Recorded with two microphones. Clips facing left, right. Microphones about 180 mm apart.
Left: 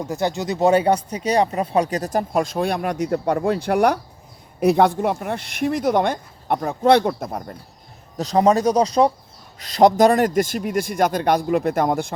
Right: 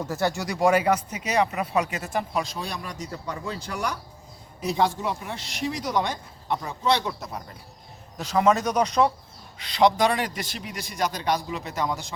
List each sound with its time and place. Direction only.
0.0 s speech: 15° left (ahead or behind); by 7.5 s 50° left (ahead or behind)
8.2 s a man's voice: 35° left (ahead or behind); by 12.1 s 55° left (ahead or behind)